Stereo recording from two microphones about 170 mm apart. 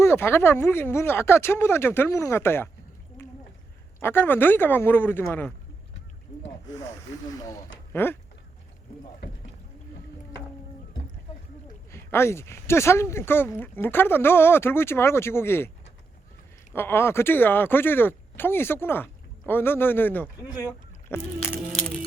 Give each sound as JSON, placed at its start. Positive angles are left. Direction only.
{"t": 0.0, "sound": "speech", "side_deg": 15}
{"t": 3.2, "sound": "a sound", "side_deg": 15}
{"t": 4.0, "sound": "speech", "side_deg": 10}
{"t": 7.3, "sound": "speech", "side_deg": 20}
{"t": 11.9, "sound": "speech", "side_deg": 15}
{"t": 16.7, "sound": "speech", "side_deg": 15}
{"t": 20.2, "sound": "speech", "side_deg": -5}
{"t": 21.1, "sound": "speech", "side_deg": 15}